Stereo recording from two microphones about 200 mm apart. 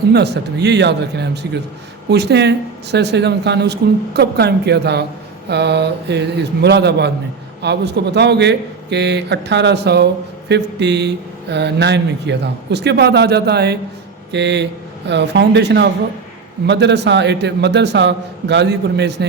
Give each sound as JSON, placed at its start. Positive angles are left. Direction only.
{"t": 0.1, "sound": "speech", "side_deg": -55}